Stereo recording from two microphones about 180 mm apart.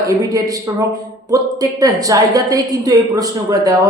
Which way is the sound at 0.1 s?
20° right (ahead or behind).